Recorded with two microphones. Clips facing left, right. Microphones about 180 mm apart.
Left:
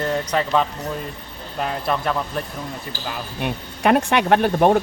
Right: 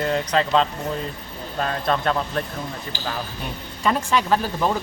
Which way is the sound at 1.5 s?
10° left (ahead or behind).